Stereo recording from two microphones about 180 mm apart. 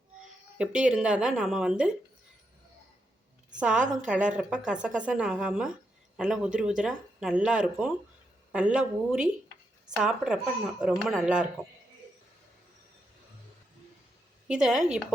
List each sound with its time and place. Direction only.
0.6 s a woman's voice: 5° right (ahead or behind)
3.6 s a woman's voice: 5° right (ahead or behind)
14.4 s a woman's voice: 5° right (ahead or behind)